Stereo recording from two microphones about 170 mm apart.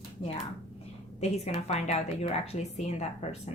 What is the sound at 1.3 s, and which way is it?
Speech, 40° left (ahead or behind).